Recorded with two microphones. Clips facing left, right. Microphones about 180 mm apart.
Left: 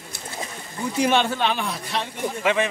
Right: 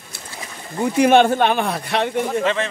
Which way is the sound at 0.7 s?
55° right (ahead or behind).